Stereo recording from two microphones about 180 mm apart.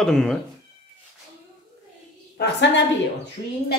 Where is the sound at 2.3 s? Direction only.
70° left (ahead or behind).